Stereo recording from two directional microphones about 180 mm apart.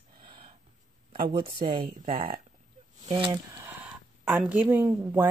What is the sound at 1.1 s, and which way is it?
Speech, 30° right (ahead or behind).